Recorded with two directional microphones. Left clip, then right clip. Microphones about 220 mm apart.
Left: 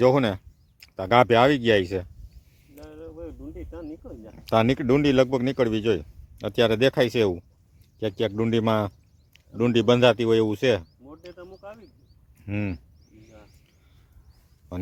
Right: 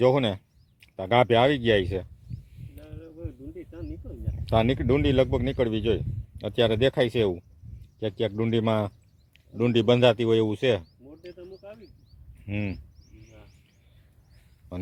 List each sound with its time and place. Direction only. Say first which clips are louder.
0.0 s speech: left 2 dB; 15° left (ahead or behind)
2.8 s a sound: left 4 dB; 25° left (ahead or behind)
4.4 s a man's voice: left 3 dB; 10° left (ahead or behind)
11.3 s speech: left 1 dB; 20° left (ahead or behind)
12.5 s a man's voice: left 2 dB; 10° left (ahead or behind)